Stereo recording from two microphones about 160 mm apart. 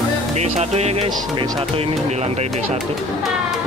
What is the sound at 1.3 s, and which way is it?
Speech, 30° right (ahead or behind).